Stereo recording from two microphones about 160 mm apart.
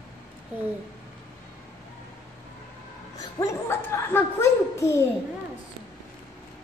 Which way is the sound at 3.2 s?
20° left (ahead or behind).